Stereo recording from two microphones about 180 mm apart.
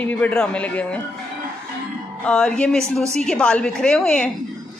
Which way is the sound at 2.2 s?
5° left (ahead or behind).